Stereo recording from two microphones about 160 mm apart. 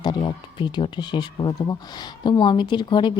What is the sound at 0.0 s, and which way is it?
Speech, 30° left (ahead or behind).